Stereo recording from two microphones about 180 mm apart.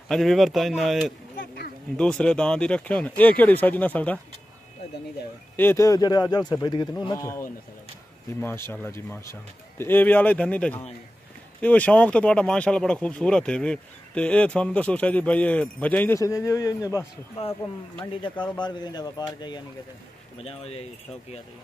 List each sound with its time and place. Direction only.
0.1 s a man's voice: centre (ahead or behind)
5.6 s speech: 15° left (ahead or behind)
18.4 s speech: 25° left (ahead or behind)